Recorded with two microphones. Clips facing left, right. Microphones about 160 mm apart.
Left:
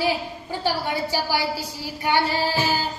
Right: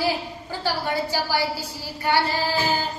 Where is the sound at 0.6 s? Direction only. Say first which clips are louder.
Even; 15° left (ahead or behind).